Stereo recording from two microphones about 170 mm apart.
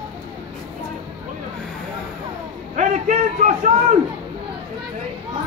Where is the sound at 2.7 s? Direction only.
45° right (ahead or behind).